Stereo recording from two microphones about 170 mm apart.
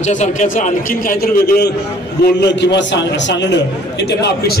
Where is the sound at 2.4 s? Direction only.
90° left.